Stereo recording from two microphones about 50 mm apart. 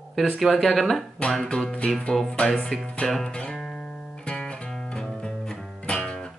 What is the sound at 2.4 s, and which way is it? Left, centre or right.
Speech, centre.